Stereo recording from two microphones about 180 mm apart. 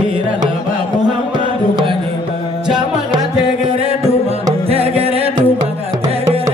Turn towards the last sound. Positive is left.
turn(degrees=-35)  # may be behind; listen again after turning